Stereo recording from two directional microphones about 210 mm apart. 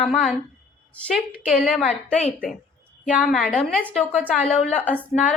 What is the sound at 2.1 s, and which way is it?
Speech, 30° left (ahead or behind).